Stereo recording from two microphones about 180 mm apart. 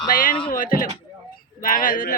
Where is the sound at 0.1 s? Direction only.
50° left (ahead or behind).